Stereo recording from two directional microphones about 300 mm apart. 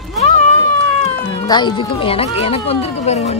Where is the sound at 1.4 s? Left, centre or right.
Centre.